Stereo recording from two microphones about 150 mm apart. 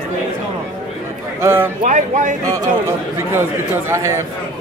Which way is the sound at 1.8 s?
55° right (ahead or behind).